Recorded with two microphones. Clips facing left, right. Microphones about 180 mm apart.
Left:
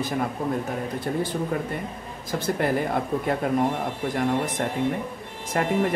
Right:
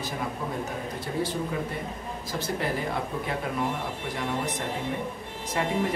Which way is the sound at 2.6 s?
50° left (ahead or behind).